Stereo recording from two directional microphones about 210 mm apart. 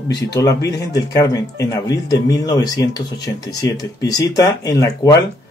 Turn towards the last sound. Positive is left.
turn(degrees=15)  # may be behind; listen again after turning